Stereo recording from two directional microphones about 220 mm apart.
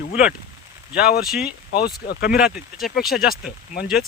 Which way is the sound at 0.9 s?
45° left (ahead or behind).